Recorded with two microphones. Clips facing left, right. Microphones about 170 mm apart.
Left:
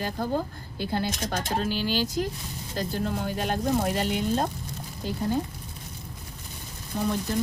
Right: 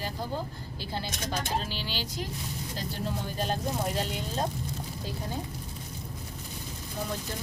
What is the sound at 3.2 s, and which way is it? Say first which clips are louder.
Speech: left 4 dB; 60° left (ahead or behind).